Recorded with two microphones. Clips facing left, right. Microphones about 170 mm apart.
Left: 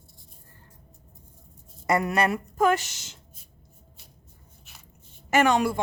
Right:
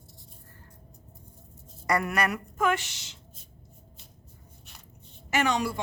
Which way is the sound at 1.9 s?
25° left (ahead or behind).